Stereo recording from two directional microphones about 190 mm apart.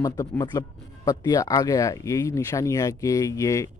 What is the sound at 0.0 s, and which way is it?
Speech, 15° left (ahead or behind).